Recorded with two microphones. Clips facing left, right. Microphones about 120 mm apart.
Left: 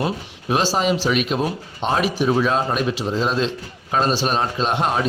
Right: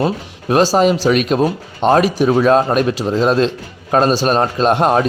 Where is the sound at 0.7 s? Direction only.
45° right (ahead or behind).